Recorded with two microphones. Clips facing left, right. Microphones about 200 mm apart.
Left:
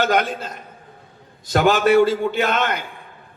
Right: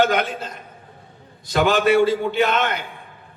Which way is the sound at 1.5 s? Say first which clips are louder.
Left 2 dB; 45° left (ahead or behind).